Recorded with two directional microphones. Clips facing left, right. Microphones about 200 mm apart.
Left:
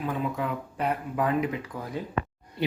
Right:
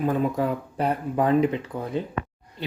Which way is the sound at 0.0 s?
45° right (ahead or behind).